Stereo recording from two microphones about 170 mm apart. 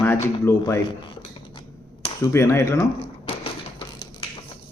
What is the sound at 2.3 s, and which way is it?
Speech, 15° left (ahead or behind).